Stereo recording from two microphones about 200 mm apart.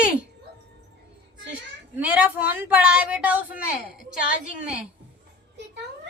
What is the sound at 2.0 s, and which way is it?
Speech, 10° right (ahead or behind).